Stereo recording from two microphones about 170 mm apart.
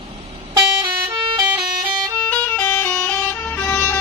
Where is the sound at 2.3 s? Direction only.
10° left (ahead or behind).